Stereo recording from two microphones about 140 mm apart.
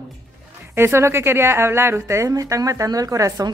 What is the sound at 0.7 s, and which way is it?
Speech, 15° right (ahead or behind).